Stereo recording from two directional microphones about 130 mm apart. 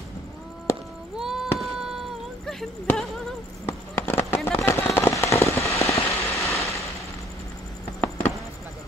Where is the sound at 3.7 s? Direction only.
15° left (ahead or behind).